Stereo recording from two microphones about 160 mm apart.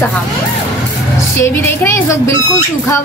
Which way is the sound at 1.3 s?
15° left (ahead or behind).